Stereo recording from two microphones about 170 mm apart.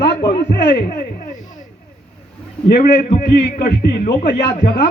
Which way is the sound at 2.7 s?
60° left (ahead or behind).